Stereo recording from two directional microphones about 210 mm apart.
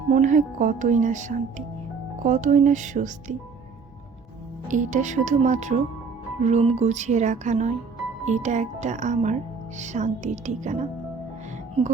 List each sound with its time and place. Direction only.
0.1 s speech: 35° right (ahead or behind)
4.7 s speech: 35° right (ahead or behind)